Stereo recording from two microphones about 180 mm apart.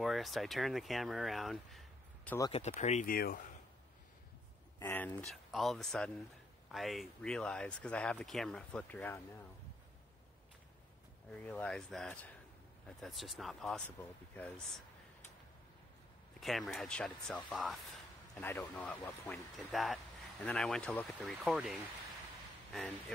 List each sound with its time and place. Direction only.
0.0 s speech: centre (ahead or behind)
2.5 s speech: 40° left (ahead or behind); by 3.5 s 55° left (ahead or behind)
4.7 s speech: 15° left (ahead or behind)
11.4 s speech: 5° left (ahead or behind)
16.3 s speech: centre (ahead or behind)